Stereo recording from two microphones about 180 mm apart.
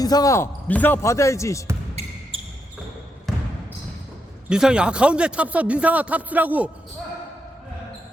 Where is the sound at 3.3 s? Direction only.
Centre (ahead or behind).